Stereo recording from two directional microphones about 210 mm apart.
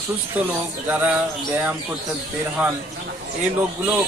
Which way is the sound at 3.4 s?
10° right (ahead or behind).